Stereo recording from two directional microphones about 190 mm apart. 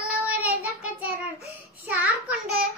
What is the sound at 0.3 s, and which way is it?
Child singing, 10° right (ahead or behind).